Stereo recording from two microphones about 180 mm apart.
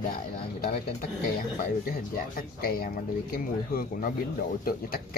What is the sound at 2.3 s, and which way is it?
Speech, 55° left (ahead or behind).